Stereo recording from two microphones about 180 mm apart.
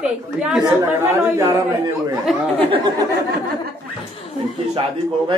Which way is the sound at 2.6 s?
30° right (ahead or behind).